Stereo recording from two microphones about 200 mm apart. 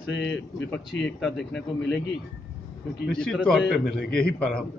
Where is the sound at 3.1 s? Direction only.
5° left (ahead or behind).